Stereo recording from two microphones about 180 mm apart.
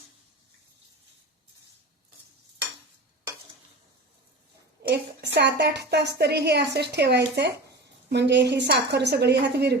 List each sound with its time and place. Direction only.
4.8 s a woman's voice: 65° right (ahead or behind)